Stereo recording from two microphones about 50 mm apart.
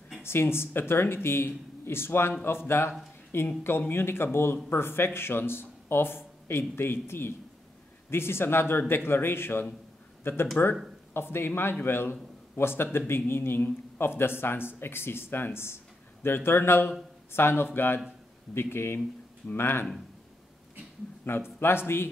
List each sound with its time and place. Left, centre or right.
0.2 s speech: left
21.3 s speech: left